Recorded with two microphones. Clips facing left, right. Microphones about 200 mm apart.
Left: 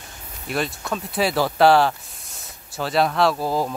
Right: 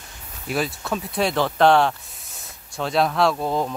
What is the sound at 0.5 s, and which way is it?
Speech, centre (ahead or behind).